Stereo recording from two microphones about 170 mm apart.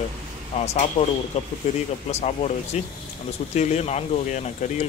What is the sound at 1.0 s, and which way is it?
Speech, 30° left (ahead or behind).